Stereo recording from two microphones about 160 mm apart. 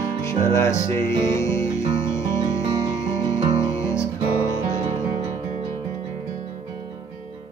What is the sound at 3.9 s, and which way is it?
Music, 20° left (ahead or behind).